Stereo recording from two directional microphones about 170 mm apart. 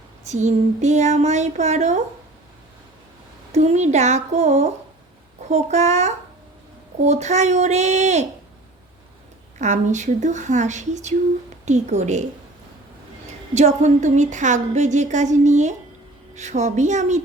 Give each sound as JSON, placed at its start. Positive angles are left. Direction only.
{"t": 0.3, "sound": "a woman's voice", "side_deg": -45}
{"t": 3.5, "sound": "a woman's voice", "side_deg": -40}
{"t": 9.6, "sound": "a woman's voice", "side_deg": -45}
{"t": 13.5, "sound": "a woman's voice", "side_deg": -45}